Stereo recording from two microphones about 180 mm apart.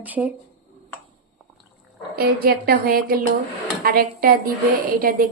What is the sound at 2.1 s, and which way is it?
A woman's voice, 60° right (ahead or behind).